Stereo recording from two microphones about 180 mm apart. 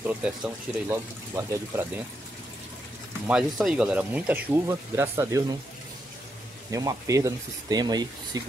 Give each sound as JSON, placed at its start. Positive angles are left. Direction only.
{"t": 0.0, "sound": "speech", "side_deg": -5}
{"t": 3.3, "sound": "speech", "side_deg": 0}
{"t": 6.7, "sound": "speech", "side_deg": -20}